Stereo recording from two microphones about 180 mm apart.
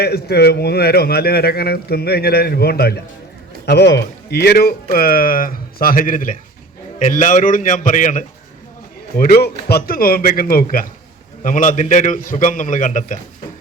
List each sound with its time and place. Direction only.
0.0 s a man's voice: 65° left (ahead or behind); by 8.2 s 45° left (ahead or behind)
9.1 s a man's voice: 60° left (ahead or behind)